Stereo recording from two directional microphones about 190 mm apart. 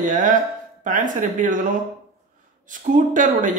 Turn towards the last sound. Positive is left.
turn(degrees=-40)  # may be behind; listen again after turning